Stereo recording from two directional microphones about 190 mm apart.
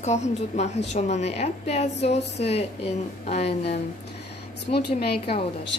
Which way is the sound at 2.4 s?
35° left (ahead or behind).